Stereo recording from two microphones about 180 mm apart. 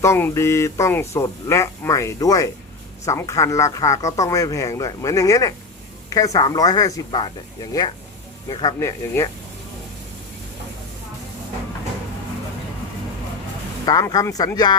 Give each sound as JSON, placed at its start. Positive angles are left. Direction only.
{"t": 0.0, "sound": "a man's voice", "side_deg": 15}
{"t": 13.8, "sound": "speech", "side_deg": 20}